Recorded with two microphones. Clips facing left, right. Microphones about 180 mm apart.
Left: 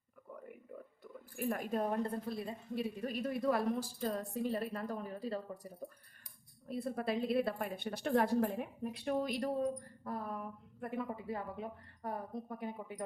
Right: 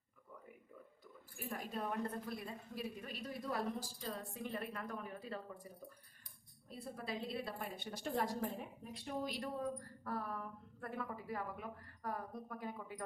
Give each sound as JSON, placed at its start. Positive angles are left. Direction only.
{"t": 1.5, "sound": "speech", "side_deg": 50}
{"t": 2.2, "sound": "speech", "side_deg": 25}
{"t": 3.0, "sound": "speech", "side_deg": 45}
{"t": 3.5, "sound": "a woman's voice", "side_deg": 55}
{"t": 6.7, "sound": "a woman's voice", "side_deg": 65}
{"t": 9.6, "sound": "speech", "side_deg": 20}